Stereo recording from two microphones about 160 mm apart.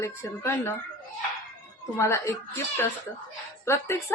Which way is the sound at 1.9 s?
20° left (ahead or behind).